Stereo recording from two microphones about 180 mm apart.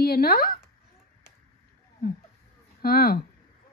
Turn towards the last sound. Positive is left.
turn(degrees=55)  # may be behind; listen again after turning